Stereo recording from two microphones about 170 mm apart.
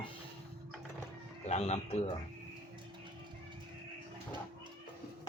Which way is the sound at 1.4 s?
40° left (ahead or behind).